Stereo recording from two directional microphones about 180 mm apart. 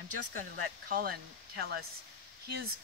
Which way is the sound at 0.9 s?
55° right (ahead or behind).